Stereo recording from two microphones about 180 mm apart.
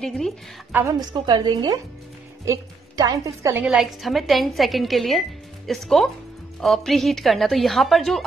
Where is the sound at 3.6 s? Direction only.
Centre (ahead or behind).